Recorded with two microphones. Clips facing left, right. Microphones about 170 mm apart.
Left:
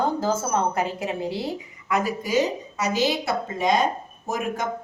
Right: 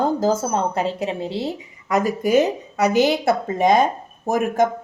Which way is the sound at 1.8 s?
40° right (ahead or behind).